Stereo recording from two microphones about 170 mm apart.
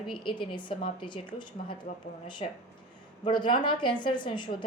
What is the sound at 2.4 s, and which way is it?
A woman's voice, 35° left (ahead or behind).